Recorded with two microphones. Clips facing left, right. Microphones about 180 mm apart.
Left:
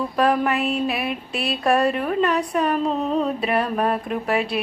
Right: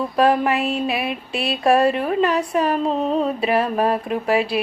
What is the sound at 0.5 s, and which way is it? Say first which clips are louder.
Speech: right 1 dB; 30° right (ahead or behind).